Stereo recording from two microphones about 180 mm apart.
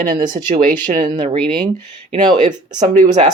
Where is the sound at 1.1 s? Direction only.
30° right (ahead or behind).